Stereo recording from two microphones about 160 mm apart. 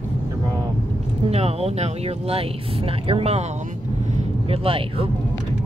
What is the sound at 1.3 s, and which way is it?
Speech, 40° right (ahead or behind).